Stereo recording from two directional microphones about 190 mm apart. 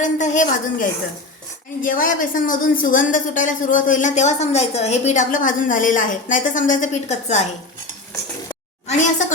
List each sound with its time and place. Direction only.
0.0 s a woman's voice: 40° left (ahead or behind)
8.9 s a woman's voice: 40° left (ahead or behind)